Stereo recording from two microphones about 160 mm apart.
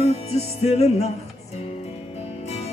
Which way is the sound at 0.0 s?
40° left (ahead or behind).